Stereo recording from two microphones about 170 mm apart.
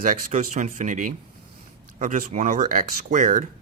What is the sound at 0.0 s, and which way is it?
Speech, 50° right (ahead or behind).